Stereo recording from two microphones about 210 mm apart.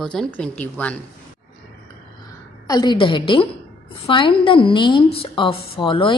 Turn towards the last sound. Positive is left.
turn(degrees=25)  # may be behind; listen again after turning